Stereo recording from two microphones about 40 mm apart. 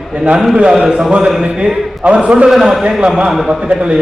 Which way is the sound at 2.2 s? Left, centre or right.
Right.